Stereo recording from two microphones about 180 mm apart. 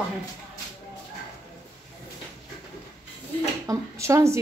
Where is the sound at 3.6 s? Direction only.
15° right (ahead or behind).